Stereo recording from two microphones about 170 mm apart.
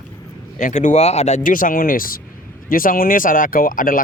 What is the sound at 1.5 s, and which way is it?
Speech, 55° left (ahead or behind).